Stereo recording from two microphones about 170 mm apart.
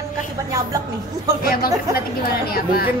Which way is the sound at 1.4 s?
60° left (ahead or behind).